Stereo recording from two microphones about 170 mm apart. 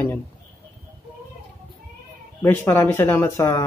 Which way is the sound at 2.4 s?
10° left (ahead or behind).